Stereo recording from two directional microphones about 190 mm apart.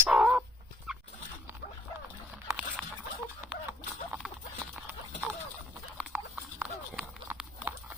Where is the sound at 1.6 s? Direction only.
40° left (ahead or behind).